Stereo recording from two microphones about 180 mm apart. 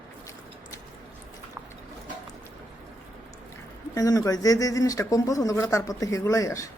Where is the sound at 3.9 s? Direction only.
20° left (ahead or behind).